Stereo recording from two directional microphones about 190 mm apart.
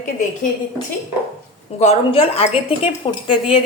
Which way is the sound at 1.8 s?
30° left (ahead or behind).